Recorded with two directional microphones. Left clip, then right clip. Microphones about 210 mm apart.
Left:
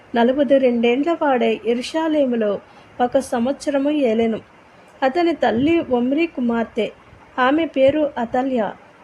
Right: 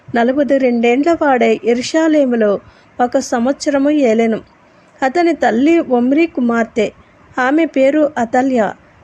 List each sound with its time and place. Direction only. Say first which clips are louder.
0.1 s a woman's voice: right 2 dB; 15° right (ahead or behind)